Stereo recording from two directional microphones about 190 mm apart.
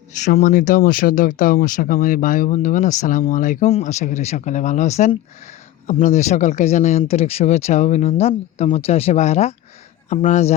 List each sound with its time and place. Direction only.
0.1 s speech: 40° left (ahead or behind)